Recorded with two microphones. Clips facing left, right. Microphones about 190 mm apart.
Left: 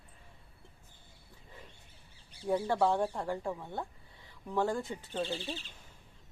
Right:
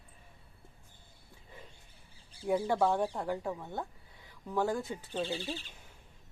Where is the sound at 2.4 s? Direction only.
10° right (ahead or behind).